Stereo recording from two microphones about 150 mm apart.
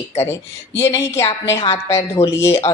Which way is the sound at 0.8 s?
20° left (ahead or behind).